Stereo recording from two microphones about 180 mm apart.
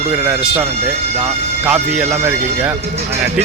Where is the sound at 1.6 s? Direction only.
10° right (ahead or behind).